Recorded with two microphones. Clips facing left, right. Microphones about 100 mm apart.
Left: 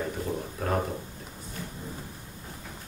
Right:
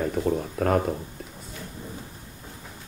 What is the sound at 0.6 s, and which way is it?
Speech, 55° right (ahead or behind).